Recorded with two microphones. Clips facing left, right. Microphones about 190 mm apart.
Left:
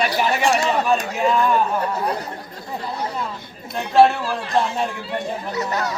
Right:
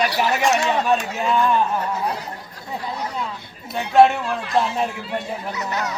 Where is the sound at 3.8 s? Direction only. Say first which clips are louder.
Even; centre (ahead or behind).